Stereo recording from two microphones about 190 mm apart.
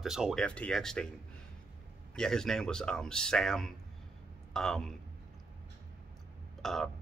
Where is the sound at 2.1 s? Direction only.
5° left (ahead or behind).